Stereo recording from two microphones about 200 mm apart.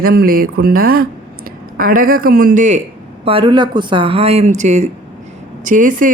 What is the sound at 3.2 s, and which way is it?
Speech, 25° right (ahead or behind).